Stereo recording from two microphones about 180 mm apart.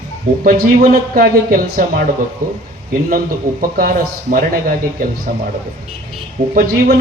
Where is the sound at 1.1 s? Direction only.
50° right (ahead or behind).